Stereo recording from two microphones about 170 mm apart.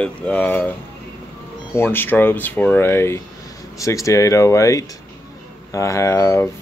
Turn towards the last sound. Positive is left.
turn(degrees=15)  # may be behind; listen again after turning